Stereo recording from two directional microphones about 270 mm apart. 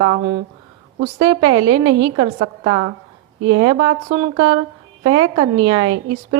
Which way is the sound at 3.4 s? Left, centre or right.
Right.